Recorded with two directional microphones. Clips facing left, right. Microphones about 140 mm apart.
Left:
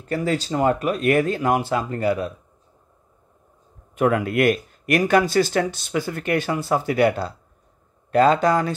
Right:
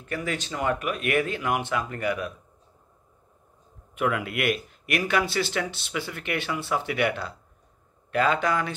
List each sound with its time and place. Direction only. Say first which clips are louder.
0.0 s speech: left 7 dB; 35° left (ahead or behind)
3.9 s speech: left 7 dB; 40° left (ahead or behind)